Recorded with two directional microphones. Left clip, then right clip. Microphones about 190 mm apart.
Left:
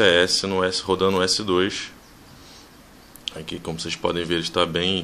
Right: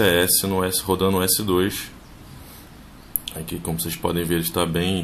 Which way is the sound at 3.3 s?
20° left (ahead or behind).